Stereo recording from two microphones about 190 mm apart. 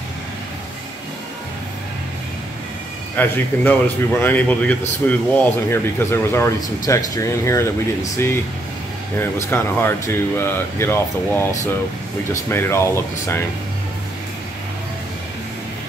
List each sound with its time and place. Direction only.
3.2 s speech: 10° left (ahead or behind)
9.2 s speech: 10° left (ahead or behind)